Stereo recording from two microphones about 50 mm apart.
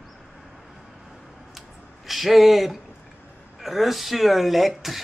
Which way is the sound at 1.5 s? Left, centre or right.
Centre.